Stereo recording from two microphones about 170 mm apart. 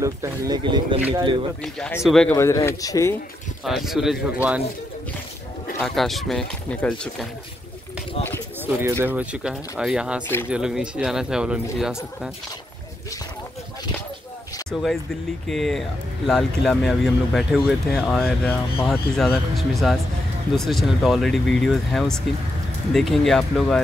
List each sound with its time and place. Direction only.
0.0 s speech: 20° right (ahead or behind)
1.6 s speech: 5° left (ahead or behind)
2.3 s speech: 15° left (ahead or behind)
3.6 s speech: centre (ahead or behind)
5.8 s speech: centre (ahead or behind)
8.6 s speech: 15° right (ahead or behind)
10.2 s speech: 10° left (ahead or behind)
10.5 s speech: 5° right (ahead or behind)
14.7 s speech: 5° left (ahead or behind)